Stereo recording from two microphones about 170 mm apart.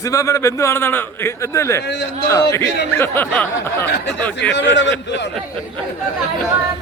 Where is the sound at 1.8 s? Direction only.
85° left.